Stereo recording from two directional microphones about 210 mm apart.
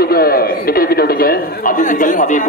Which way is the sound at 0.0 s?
45° left (ahead or behind).